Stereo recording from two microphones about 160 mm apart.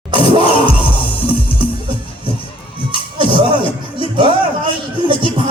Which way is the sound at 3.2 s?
30° right (ahead or behind).